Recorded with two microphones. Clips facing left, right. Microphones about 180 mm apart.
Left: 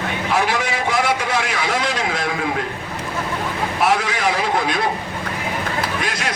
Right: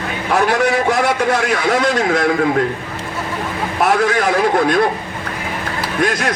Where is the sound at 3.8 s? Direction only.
55° right (ahead or behind).